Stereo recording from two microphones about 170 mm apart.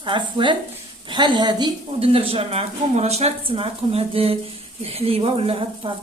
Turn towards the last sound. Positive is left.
turn(degrees=-30)  # may be behind; listen again after turning